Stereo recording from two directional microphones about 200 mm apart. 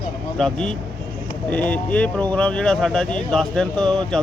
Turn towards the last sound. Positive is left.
turn(degrees=5)  # may be behind; listen again after turning